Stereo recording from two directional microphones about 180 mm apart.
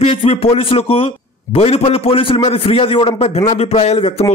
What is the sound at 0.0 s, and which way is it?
A man's voice, 35° left (ahead or behind).